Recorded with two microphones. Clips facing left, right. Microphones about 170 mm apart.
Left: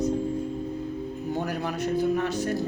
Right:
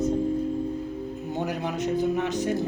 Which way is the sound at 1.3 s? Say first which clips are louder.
Right 2 dB; 20° right (ahead or behind).